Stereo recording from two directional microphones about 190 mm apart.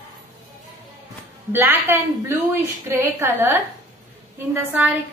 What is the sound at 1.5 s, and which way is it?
A woman's voice, 10° right (ahead or behind).